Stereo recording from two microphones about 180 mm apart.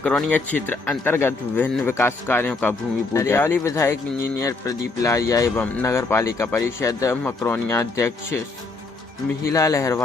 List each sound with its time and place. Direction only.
0.0 s speech: 5° left (ahead or behind)
9.4 s speech: 20° left (ahead or behind)